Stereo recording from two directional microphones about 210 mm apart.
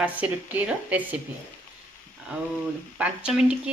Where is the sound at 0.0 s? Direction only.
5° right (ahead or behind).